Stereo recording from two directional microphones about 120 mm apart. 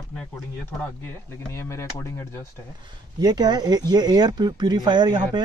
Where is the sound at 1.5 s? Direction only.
25° left (ahead or behind).